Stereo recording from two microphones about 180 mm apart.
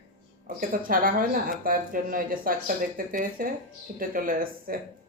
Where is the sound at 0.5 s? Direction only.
50° right (ahead or behind).